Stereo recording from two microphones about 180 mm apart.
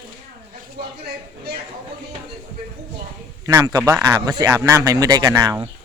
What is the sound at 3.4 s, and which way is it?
A man's voice, 20° right (ahead or behind).